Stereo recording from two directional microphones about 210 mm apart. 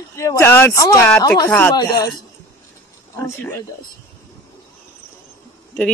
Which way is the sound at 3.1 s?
10° left (ahead or behind).